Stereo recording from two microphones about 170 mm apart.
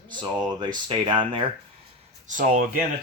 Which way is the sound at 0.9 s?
30° right (ahead or behind).